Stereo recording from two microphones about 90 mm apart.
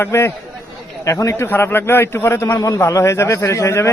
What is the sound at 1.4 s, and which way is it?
A man's voice, 25° left (ahead or behind).